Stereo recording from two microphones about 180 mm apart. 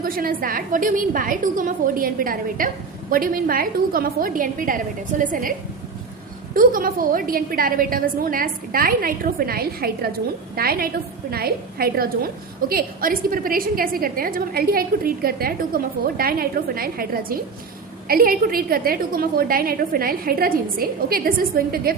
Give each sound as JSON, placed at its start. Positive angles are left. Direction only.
{"t": 0.0, "sound": "a woman's voice", "side_deg": -55}